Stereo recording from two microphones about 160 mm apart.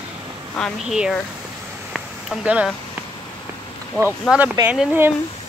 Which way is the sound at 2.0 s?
5° right (ahead or behind).